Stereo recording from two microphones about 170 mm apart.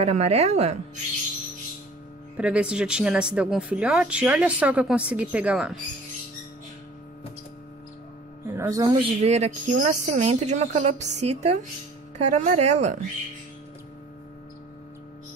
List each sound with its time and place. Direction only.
0.0 s speech: 40° right (ahead or behind)
2.3 s speech: 5° right (ahead or behind)
8.5 s speech: 15° right (ahead or behind)
9.0 s speech: 40° right (ahead or behind)